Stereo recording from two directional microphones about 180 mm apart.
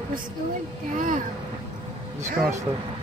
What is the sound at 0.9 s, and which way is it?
Speech, 50° right (ahead or behind).